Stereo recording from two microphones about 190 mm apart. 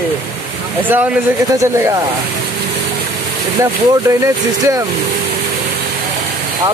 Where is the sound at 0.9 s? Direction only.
10° right (ahead or behind).